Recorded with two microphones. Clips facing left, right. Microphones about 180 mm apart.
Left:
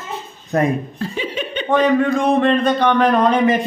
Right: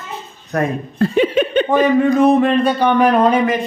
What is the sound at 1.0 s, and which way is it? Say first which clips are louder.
Speech: right 10 dB; 55° right (ahead or behind).